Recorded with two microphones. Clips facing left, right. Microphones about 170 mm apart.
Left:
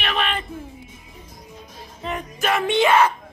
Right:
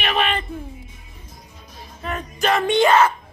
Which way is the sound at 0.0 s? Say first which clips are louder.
Right 3 dB; 5° right (ahead or behind).